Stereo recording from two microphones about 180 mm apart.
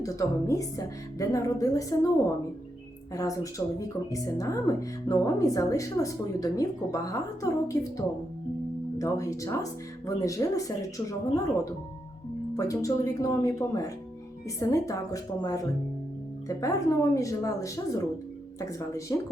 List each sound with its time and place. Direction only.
0.0 s speech: 20° left (ahead or behind)
3.2 s speech: 20° left (ahead or behind)